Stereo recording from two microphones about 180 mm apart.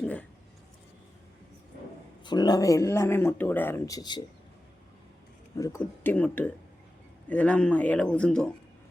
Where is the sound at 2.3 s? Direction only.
25° left (ahead or behind).